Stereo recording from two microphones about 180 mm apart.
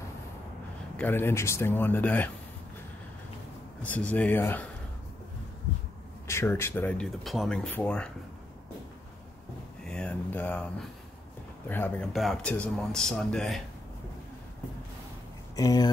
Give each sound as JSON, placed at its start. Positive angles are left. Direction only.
{"t": 0.9, "sound": "speech", "side_deg": 10}
{"t": 3.8, "sound": "speech", "side_deg": 10}
{"t": 6.2, "sound": "speech", "side_deg": 15}
{"t": 9.8, "sound": "a sound", "side_deg": 5}
{"t": 11.7, "sound": "speech", "side_deg": 10}
{"t": 12.1, "sound": "speech", "side_deg": 0}
{"t": 15.5, "sound": "speech", "side_deg": 20}